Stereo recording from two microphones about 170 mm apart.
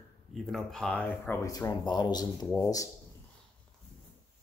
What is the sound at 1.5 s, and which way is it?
Speech, 20° left (ahead or behind).